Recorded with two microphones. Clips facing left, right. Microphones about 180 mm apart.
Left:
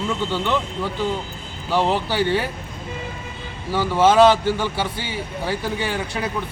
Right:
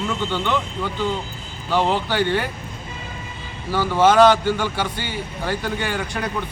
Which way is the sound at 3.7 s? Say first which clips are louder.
Even; centre (ahead or behind).